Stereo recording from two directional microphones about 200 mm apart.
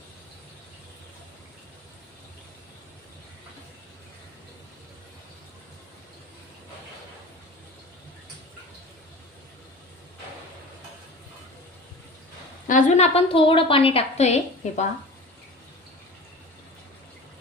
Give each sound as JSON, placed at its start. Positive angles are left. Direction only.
{"t": 12.6, "sound": "a woman's voice", "side_deg": 35}